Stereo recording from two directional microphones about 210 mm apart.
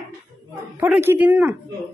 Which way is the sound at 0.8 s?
10° right (ahead or behind).